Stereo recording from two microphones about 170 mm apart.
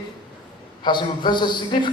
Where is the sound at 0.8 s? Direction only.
25° left (ahead or behind).